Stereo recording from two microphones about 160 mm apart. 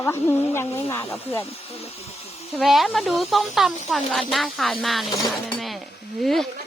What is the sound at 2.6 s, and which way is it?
Speech, centre (ahead or behind).